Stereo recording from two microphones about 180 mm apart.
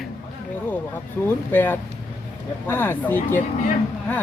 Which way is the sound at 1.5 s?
10° left (ahead or behind).